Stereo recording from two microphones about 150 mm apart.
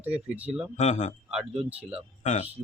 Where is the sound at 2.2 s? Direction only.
50° left (ahead or behind).